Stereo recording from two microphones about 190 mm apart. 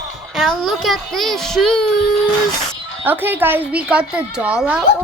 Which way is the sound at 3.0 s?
10° right (ahead or behind).